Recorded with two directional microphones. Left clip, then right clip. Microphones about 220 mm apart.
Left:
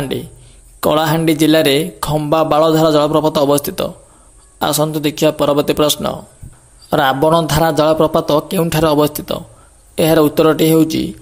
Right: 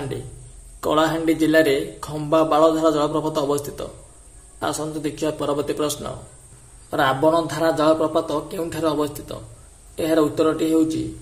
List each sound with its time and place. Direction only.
0.7 s speech: 45° left (ahead or behind)